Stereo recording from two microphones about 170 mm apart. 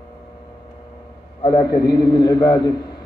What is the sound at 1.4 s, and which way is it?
A man's voice, 25° left (ahead or behind).